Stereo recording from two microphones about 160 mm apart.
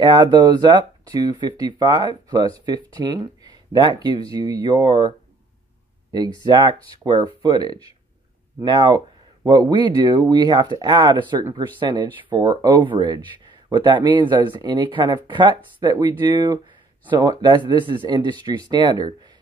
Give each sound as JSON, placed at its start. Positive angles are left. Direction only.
{"t": 0.0, "sound": "speech", "side_deg": -25}
{"t": 6.4, "sound": "speech", "side_deg": -25}